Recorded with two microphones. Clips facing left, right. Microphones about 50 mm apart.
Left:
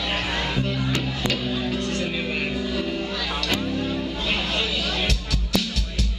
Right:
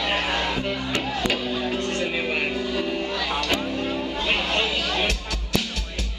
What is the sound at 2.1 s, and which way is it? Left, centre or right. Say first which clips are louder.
Vehicle: right 1 dB; centre.